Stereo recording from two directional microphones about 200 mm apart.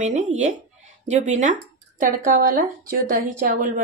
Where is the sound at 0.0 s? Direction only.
35° right (ahead or behind).